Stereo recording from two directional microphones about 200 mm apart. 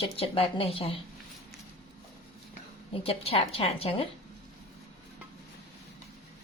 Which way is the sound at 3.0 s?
30° left (ahead or behind).